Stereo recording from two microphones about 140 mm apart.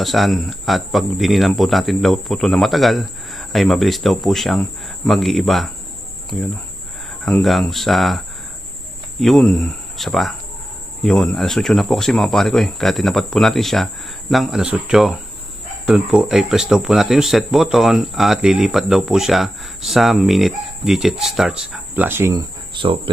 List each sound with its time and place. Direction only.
0.0 s speech: centre (ahead or behind)
9.2 s speech: centre (ahead or behind); by 22.4 s 15° right (ahead or behind)
22.4 s speech: 35° right (ahead or behind)